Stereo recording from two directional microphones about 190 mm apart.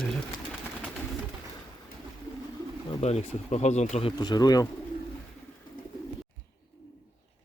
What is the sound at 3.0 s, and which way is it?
Speech, 35° left (ahead or behind).